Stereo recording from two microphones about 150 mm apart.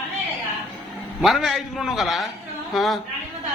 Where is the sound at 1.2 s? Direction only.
Centre (ahead or behind).